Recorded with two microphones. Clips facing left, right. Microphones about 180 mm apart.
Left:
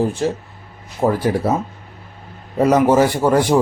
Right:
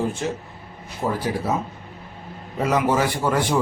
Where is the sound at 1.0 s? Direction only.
55° left (ahead or behind).